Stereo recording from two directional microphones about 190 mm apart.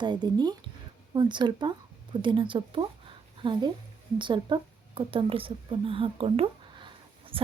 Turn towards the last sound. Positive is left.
turn(degrees=-25)  # may be behind; listen again after turning